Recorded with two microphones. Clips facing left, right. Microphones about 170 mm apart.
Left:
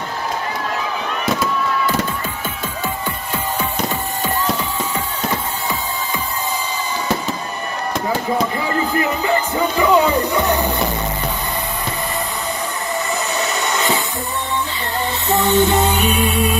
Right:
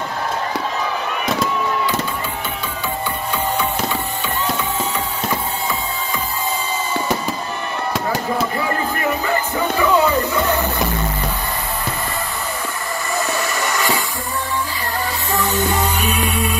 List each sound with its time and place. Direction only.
9.8 s music: 15° left (ahead or behind)
13.4 s a sound: 20° left (ahead or behind)
15.2 s music: 25° left (ahead or behind)